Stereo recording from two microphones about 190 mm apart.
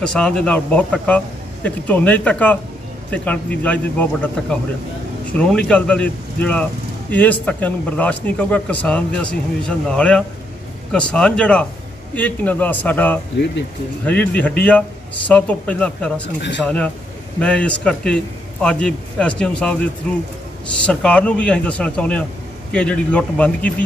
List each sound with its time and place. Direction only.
0.0 s a man's voice: 5° left (ahead or behind)